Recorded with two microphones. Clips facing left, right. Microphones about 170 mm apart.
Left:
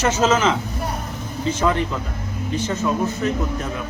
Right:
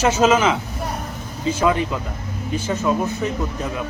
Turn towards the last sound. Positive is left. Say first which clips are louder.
# even
turn(degrees=-15)  # may be behind; listen again after turning